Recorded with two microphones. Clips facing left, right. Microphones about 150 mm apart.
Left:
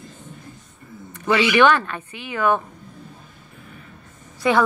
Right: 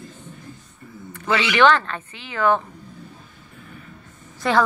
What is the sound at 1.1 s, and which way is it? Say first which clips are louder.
Speech: left 4 dB; 15° left (ahead or behind).